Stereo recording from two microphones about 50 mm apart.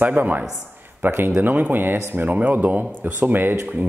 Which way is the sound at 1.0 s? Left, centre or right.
Right.